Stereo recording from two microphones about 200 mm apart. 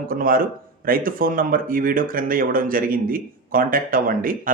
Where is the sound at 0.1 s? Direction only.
45° right (ahead or behind).